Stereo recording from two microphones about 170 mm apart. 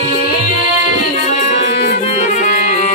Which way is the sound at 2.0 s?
40° left (ahead or behind).